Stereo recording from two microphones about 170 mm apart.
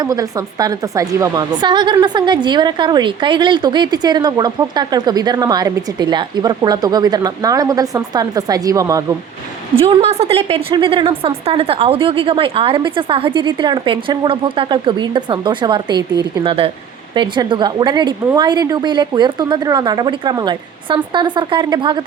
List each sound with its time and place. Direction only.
0.0 s a woman's voice: 20° right (ahead or behind)
9.7 s a woman's voice: 35° right (ahead or behind)